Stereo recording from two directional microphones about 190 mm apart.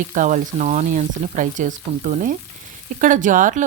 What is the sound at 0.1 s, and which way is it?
Speech, 40° right (ahead or behind).